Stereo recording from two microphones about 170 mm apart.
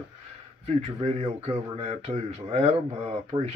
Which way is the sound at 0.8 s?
40° right (ahead or behind).